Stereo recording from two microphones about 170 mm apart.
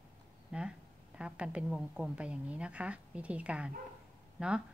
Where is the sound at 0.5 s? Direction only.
5° right (ahead or behind).